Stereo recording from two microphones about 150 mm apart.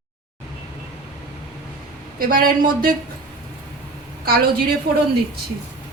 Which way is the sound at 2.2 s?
70° right (ahead or behind).